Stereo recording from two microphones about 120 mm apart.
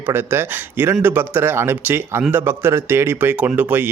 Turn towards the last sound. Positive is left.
turn(degrees=-15)  # may be behind; listen again after turning